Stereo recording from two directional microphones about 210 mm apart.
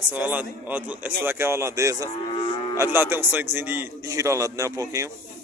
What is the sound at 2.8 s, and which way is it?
Speech, 10° right (ahead or behind).